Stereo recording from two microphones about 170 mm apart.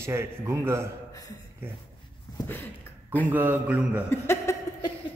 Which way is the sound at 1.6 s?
10° right (ahead or behind).